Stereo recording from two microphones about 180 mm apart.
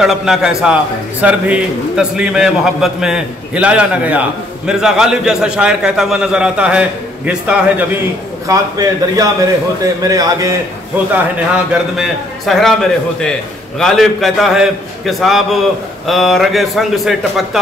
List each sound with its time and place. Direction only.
0.0 s a man's voice: 5° right (ahead or behind)
8.5 s a man's voice: 20° right (ahead or behind)
11.3 s a man's voice: 5° right (ahead or behind)